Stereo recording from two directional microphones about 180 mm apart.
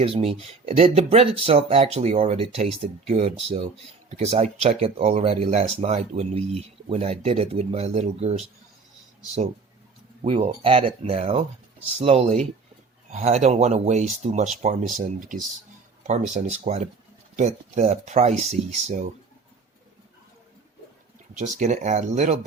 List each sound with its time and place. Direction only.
0.0 s speech: 35° right (ahead or behind)
10.2 s speech: 35° right (ahead or behind)
21.3 s speech: 40° right (ahead or behind)